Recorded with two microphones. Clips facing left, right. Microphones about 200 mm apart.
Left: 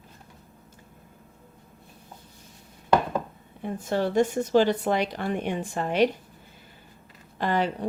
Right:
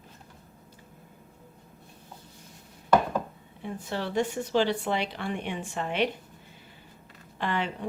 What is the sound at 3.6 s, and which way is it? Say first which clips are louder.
A woman's voice: left 6 dB; 45° left (ahead or behind).